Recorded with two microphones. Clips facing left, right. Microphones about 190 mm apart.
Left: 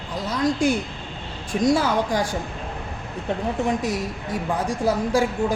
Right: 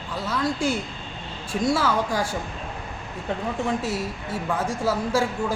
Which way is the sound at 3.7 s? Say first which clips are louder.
Left 2 dB; 15° left (ahead or behind).